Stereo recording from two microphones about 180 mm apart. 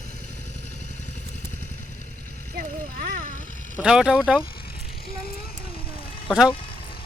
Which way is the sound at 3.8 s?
5° right (ahead or behind).